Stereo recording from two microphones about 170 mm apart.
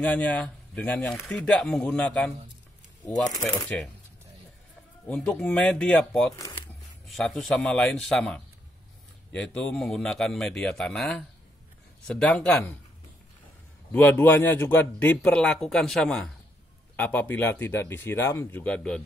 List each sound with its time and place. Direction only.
0.0 s speech: 10° left (ahead or behind)
3.6 s speech: 5° left (ahead or behind)
5.0 s speech: 5° left (ahead or behind)
13.9 s speech: 10° left (ahead or behind)